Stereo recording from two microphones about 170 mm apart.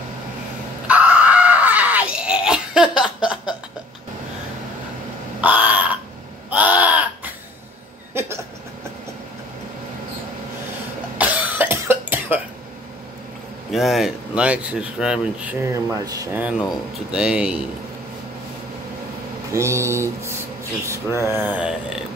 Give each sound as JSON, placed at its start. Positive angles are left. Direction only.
{"t": 0.8, "sound": "screaming", "side_deg": -10}
{"t": 5.4, "sound": "crow", "side_deg": -10}
{"t": 6.5, "sound": "caw", "side_deg": -10}
{"t": 8.1, "sound": "a sound", "side_deg": -15}
{"t": 11.1, "sound": "cough", "side_deg": -10}
{"t": 13.7, "sound": "speech", "side_deg": 0}
{"t": 15.6, "sound": "speech", "side_deg": -20}
{"t": 16.3, "sound": "speech", "side_deg": -5}
{"t": 19.5, "sound": "a sound", "side_deg": -15}
{"t": 20.8, "sound": "speech", "side_deg": -15}